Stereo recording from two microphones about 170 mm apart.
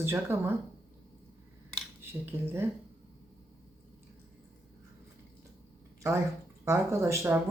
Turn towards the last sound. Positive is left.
turn(degrees=-15)  # may be behind; listen again after turning